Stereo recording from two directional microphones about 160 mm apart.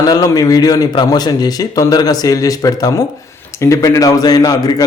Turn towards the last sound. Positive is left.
turn(degrees=25)  # may be behind; listen again after turning